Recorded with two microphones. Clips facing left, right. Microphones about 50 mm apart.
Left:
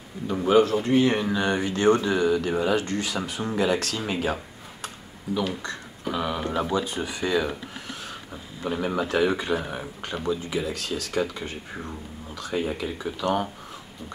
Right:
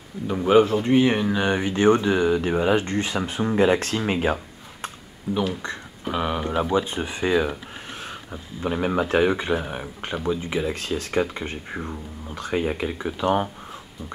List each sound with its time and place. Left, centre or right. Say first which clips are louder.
0.3 s speech: right 2 dB; centre
5.3 s speech: right 2 dB; centre